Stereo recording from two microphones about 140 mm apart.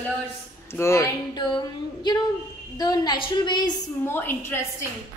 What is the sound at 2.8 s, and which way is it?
Speech, 30° left (ahead or behind).